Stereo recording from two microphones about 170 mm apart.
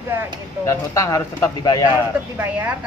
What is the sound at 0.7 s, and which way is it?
Speech, 20° left (ahead or behind).